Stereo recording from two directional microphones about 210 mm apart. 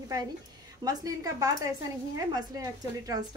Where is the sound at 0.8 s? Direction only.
15° right (ahead or behind).